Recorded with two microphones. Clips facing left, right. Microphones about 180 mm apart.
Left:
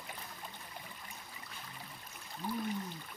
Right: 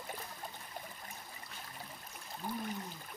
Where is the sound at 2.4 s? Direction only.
45° right (ahead or behind).